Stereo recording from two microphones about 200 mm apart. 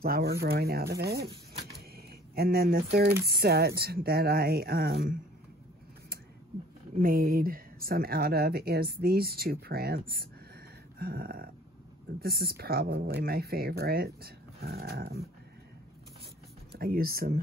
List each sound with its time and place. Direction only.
0.0 s speech: 50° right (ahead or behind)
7.0 s speech: 45° right (ahead or behind)
16.7 s speech: 50° right (ahead or behind)